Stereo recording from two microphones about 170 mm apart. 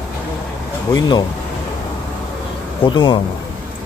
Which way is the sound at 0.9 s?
25° left (ahead or behind).